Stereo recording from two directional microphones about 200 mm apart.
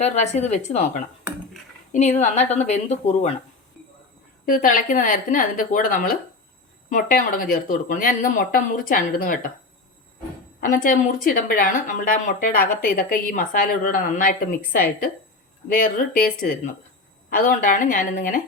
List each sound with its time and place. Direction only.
0.0 s a woman's voice: 35° left (ahead or behind)
4.4 s a woman's voice: 45° left (ahead or behind)
10.6 s a woman's voice: 40° left (ahead or behind)